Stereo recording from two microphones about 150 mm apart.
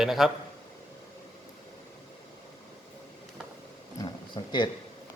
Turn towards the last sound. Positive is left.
turn(degrees=30)  # may be behind; listen again after turning